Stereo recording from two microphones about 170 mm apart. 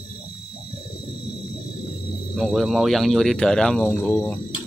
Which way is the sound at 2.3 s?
Centre (ahead or behind).